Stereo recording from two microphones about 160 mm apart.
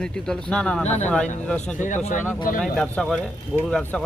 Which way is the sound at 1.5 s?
5° left (ahead or behind).